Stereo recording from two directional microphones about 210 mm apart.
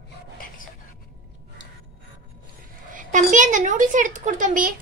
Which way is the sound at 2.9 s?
35° right (ahead or behind).